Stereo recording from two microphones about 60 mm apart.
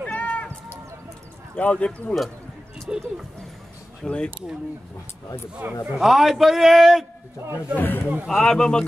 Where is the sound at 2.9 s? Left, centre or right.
Centre.